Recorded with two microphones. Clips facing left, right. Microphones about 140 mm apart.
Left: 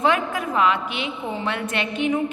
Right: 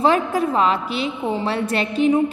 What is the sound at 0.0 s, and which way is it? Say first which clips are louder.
A woman's voice: right 4 dB; 35° right (ahead or behind).